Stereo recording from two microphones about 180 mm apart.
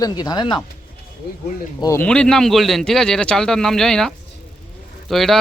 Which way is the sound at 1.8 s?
15° left (ahead or behind).